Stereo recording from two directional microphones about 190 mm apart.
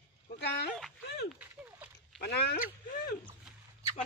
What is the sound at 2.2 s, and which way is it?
Speech, 60° left (ahead or behind).